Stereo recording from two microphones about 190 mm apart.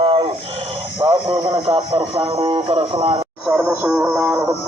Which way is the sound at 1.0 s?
25° right (ahead or behind).